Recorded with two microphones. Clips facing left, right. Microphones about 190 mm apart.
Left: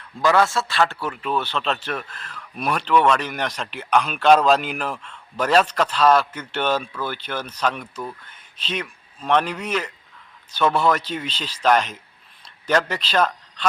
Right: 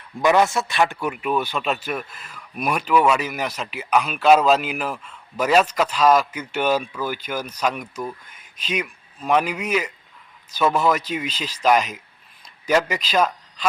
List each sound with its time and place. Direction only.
0.2 s a man's voice: 20° right (ahead or behind)